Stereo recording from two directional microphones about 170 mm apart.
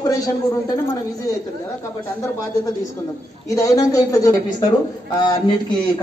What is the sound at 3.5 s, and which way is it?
A man's voice, 20° left (ahead or behind).